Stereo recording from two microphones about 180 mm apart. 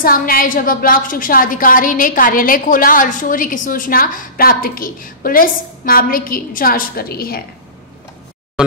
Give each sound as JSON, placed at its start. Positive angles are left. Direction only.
{"t": 0.0, "sound": "a woman's voice", "side_deg": 55}
{"t": 8.6, "sound": "music", "side_deg": -5}